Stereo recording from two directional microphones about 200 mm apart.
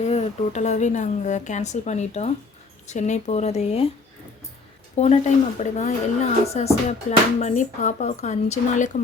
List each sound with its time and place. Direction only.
0.0 s a woman's voice: 35° left (ahead or behind)
4.9 s a woman's voice: 35° left (ahead or behind)